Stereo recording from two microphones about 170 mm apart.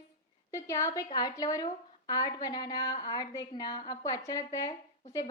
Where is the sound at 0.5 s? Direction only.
15° left (ahead or behind).